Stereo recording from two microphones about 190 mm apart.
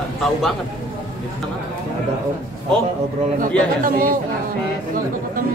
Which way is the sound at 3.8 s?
50° right (ahead or behind).